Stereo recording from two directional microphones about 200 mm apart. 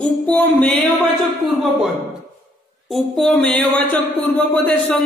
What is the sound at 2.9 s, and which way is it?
Music, centre (ahead or behind).